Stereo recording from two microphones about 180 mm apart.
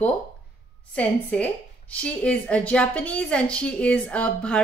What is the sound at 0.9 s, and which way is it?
A woman's voice, 5° left (ahead or behind).